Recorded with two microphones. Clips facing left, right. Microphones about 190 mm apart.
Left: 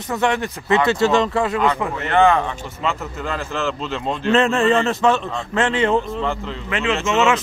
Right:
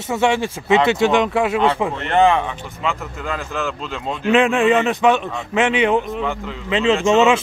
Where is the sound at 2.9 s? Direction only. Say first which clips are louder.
Even; centre (ahead or behind).